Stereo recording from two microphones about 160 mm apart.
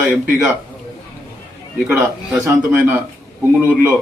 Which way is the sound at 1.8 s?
15° right (ahead or behind).